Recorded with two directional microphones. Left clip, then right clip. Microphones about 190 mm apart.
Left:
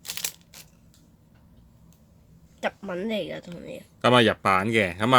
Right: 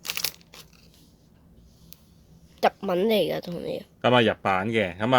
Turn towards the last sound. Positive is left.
turn(degrees=15)  # may be behind; listen again after turning